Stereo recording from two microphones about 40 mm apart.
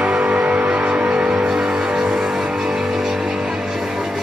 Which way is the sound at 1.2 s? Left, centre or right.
Right.